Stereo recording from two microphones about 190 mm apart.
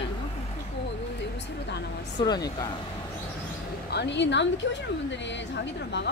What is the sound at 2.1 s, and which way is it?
Speech, 20° left (ahead or behind).